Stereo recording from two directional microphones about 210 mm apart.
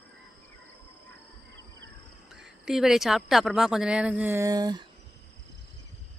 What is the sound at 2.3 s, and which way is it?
Speech, centre (ahead or behind).